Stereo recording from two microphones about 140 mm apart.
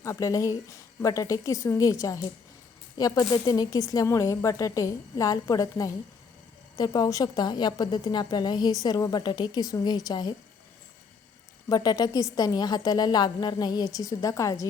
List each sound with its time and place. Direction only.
0.0 s a woman's voice: 20° left (ahead or behind)
11.7 s a woman's voice: 25° left (ahead or behind)